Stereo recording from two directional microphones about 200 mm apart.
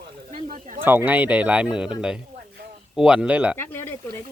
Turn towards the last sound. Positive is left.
turn(degrees=10)  # may be behind; listen again after turning